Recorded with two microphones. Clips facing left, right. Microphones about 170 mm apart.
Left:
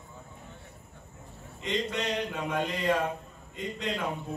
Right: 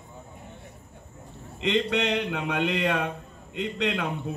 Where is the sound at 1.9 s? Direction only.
70° right (ahead or behind).